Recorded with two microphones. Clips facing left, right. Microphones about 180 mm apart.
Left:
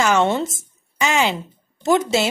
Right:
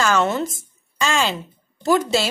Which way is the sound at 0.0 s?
20° left (ahead or behind).